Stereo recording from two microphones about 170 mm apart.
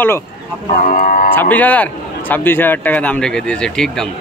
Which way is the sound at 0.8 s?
50° left (ahead or behind).